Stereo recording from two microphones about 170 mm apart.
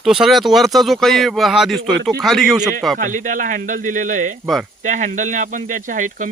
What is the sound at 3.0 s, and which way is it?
Speech, 50° right (ahead or behind).